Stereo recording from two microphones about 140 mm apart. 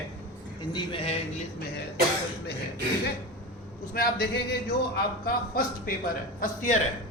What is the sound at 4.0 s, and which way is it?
A man's voice, 90° left.